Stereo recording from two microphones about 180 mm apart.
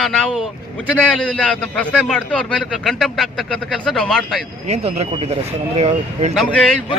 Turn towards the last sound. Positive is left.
turn(degrees=0)  # may be behind; listen again after turning